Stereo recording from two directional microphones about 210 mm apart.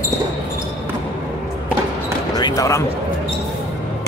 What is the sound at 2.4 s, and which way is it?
Basketball bounce, 15° left (ahead or behind).